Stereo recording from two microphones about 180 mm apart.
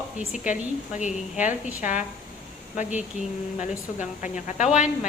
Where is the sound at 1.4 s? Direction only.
10° right (ahead or behind).